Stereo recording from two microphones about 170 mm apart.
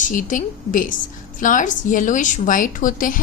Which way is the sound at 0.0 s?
50° left (ahead or behind).